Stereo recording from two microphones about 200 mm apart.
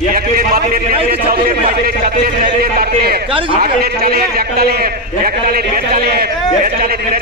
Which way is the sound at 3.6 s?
50° right (ahead or behind).